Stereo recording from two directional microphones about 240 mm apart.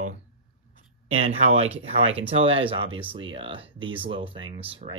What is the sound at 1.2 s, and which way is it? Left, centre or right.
Speech, right.